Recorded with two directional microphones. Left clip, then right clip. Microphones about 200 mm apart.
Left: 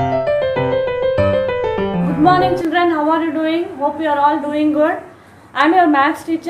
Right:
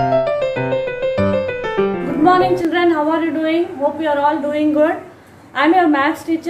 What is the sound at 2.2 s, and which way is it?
A woman's voice, centre (ahead or behind).